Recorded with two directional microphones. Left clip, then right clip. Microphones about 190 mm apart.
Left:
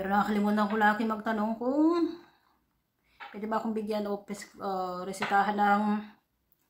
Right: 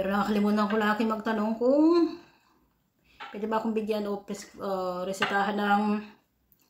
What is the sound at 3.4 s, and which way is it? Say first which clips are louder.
Speech: right 3 dB; 15° left (ahead or behind).